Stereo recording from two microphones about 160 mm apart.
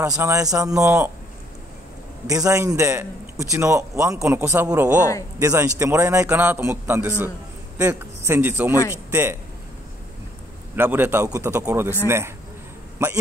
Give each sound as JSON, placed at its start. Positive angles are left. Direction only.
{"t": 0.1, "sound": "speech", "side_deg": -15}
{"t": 2.2, "sound": "a man's voice", "side_deg": -20}
{"t": 10.8, "sound": "a man's voice", "side_deg": -10}